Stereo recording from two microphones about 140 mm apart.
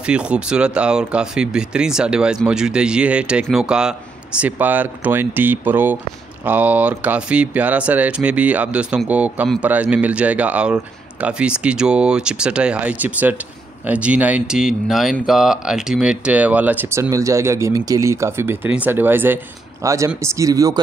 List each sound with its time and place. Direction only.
0.0 s speech: 10° right (ahead or behind); by 20.8 s 25° right (ahead or behind)